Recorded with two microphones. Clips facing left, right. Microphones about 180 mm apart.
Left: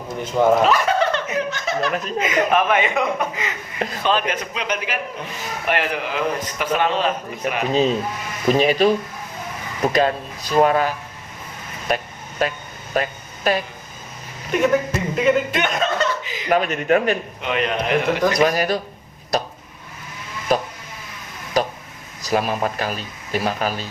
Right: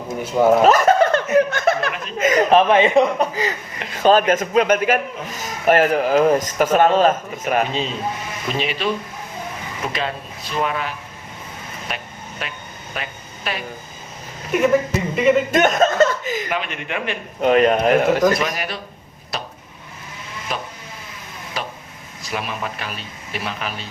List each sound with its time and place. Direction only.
0.2 s speech: 5° right (ahead or behind)
0.6 s speech: 45° right (ahead or behind)
2.5 s a man's voice: 30° right (ahead or behind)
3.8 s speech: 40° left (ahead or behind)
4.0 s speech: 45° right (ahead or behind)
8.5 s a man's voice: 40° left (ahead or behind)
12.9 s a sound: 40° left (ahead or behind)
14.5 s speech: centre (ahead or behind)
15.5 s speech: 45° right (ahead or behind)
16.5 s a man's voice: 40° left (ahead or behind)
17.4 s speech: 45° right (ahead or behind)
18.3 s speech: 40° left (ahead or behind)
20.5 s speech: 40° left (ahead or behind)